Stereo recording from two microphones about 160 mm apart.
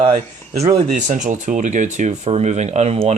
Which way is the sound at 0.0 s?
40° right (ahead or behind).